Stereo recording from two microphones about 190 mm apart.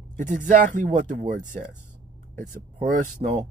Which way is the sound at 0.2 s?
40° right (ahead or behind).